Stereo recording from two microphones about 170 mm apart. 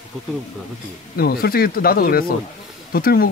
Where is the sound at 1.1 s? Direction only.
60° left (ahead or behind).